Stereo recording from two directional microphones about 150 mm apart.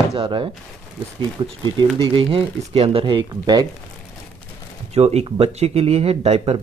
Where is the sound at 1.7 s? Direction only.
35° right (ahead or behind).